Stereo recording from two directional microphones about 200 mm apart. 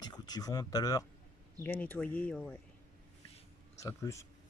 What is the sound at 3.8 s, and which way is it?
Speech, 15° left (ahead or behind).